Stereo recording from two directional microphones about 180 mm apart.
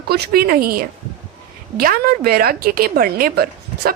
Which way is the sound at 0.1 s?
60° right (ahead or behind).